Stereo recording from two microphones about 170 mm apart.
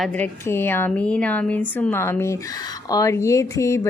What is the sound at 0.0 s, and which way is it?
Speech, 10° left (ahead or behind).